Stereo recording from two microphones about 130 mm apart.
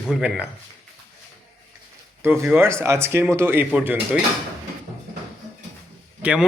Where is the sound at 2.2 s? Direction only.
20° right (ahead or behind).